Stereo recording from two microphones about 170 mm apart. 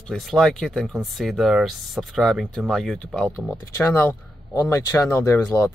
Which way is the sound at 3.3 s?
15° left (ahead or behind).